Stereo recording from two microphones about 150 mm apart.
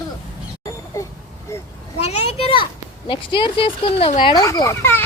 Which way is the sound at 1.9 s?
45° left (ahead or behind).